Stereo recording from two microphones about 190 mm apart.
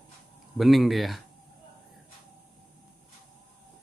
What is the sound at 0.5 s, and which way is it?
Speech, centre (ahead or behind).